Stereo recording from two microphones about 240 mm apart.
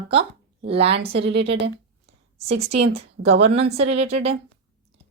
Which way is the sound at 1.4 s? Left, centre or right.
Right.